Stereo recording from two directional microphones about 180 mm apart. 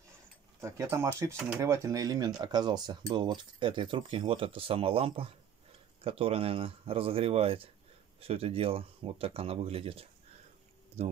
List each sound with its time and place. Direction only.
0.6 s speech: 15° right (ahead or behind); by 11.1 s 35° right (ahead or behind)